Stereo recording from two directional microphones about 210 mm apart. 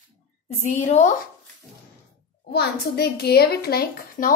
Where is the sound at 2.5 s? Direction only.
50° left (ahead or behind).